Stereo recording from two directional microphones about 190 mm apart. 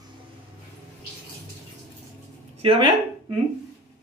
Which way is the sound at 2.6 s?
30° right (ahead or behind).